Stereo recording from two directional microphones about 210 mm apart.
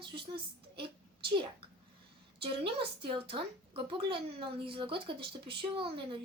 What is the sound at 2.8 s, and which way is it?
A woman's voice, 25° right (ahead or behind).